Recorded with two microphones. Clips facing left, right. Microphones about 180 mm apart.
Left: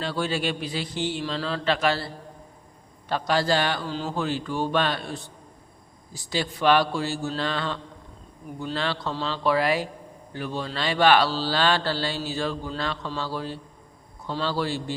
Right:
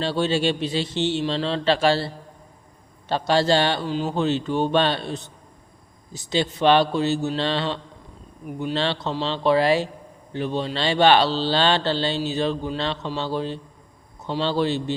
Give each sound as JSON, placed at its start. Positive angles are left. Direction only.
{"t": 0.0, "sound": "speech", "side_deg": -25}